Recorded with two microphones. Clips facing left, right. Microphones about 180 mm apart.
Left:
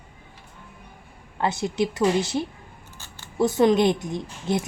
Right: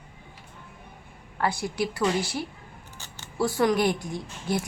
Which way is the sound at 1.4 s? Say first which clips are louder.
Left 3 dB; 20° left (ahead or behind).